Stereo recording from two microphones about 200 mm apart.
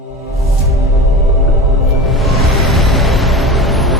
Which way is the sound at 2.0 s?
Centre (ahead or behind).